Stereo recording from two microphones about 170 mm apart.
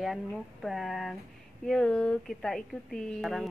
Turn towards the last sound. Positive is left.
turn(degrees=0)  # may be behind; listen again after turning